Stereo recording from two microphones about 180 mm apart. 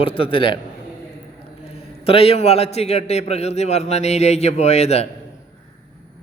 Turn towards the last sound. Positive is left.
turn(degrees=35)  # may be behind; listen again after turning